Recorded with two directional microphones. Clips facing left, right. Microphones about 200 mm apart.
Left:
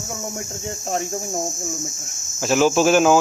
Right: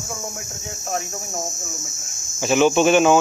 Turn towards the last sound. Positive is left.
turn(degrees=0)  # may be behind; listen again after turning